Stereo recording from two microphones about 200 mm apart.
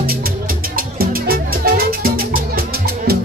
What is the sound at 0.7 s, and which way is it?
Music, 45° right (ahead or behind).